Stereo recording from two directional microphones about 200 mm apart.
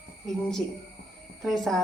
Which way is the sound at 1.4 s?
Centre (ahead or behind).